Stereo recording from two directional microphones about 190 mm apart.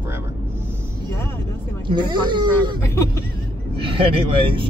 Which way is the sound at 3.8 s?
30° right (ahead or behind).